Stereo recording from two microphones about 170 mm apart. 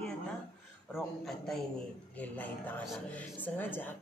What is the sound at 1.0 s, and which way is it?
A man's voice, centre (ahead or behind).